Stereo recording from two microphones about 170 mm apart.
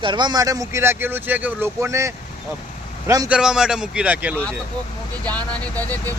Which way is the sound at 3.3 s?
5° right (ahead or behind).